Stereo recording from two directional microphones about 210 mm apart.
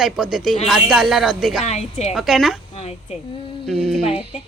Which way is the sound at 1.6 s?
30° left (ahead or behind).